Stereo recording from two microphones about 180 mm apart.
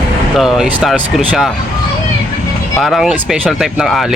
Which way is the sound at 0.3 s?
Centre (ahead or behind).